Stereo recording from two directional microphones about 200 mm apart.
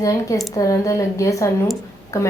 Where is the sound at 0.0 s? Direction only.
15° left (ahead or behind).